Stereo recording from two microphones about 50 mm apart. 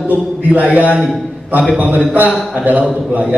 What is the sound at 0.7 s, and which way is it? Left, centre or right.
Speech, right.